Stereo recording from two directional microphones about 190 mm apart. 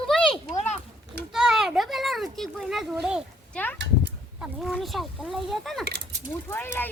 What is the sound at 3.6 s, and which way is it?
A child's voice, 5° left (ahead or behind).